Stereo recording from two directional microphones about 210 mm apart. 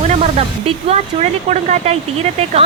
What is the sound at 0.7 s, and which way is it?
A woman's voice, 30° right (ahead or behind).